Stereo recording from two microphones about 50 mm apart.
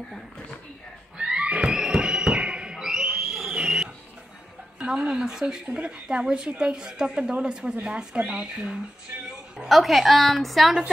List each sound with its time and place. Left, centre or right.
1.1 s a sound: centre
1.7 s music: centre
3.5 s a sound: centre
4.7 s speech: centre
5.7 s speech: right
9.1 s a woman's voice: right
9.7 s a woman's voice: centre